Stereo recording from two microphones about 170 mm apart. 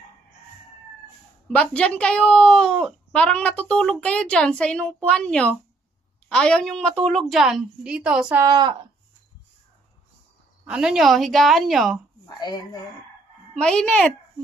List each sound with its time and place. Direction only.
1.5 s speech: 5° left (ahead or behind)
8.4 s speech: 25° right (ahead or behind)
10.7 s speech: 5° right (ahead or behind)
13.6 s speech: 5° left (ahead or behind)